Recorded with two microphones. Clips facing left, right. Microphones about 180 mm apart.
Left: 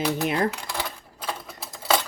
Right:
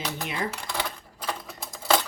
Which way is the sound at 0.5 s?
Centre (ahead or behind).